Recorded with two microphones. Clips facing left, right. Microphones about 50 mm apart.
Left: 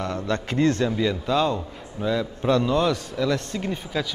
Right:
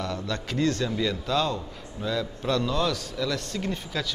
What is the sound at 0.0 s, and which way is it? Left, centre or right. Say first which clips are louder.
Speech: left 4 dB; left.